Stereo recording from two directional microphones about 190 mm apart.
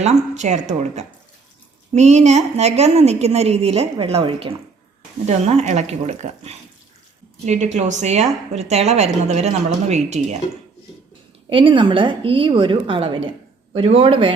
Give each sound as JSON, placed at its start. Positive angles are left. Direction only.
{"t": 0.0, "sound": "a woman's voice", "side_deg": -35}
{"t": 11.4, "sound": "a woman's voice", "side_deg": -25}